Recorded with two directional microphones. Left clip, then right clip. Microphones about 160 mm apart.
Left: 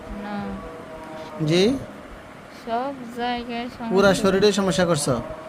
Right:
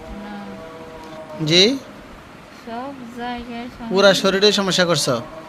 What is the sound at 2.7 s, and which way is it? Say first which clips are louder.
Speech: left 4 dB; 25° left (ahead or behind).